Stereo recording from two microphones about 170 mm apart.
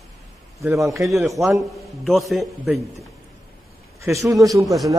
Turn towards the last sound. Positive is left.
turn(degrees=-20)  # may be behind; listen again after turning